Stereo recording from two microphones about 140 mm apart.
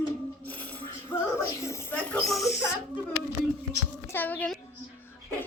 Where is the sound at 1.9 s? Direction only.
5° left (ahead or behind).